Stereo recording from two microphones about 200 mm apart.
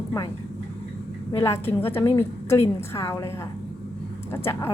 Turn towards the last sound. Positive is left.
turn(degrees=10)  # may be behind; listen again after turning